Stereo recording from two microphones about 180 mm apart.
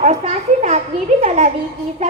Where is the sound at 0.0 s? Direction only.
40° right (ahead or behind).